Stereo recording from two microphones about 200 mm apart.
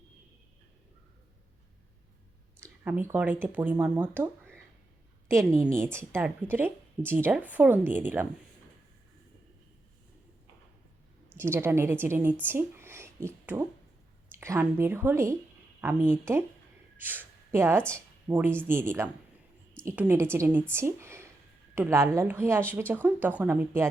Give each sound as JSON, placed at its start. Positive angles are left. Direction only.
{"t": 2.6, "sound": "speech", "side_deg": -10}
{"t": 5.7, "sound": "speech", "side_deg": -15}
{"t": 11.3, "sound": "speech", "side_deg": -10}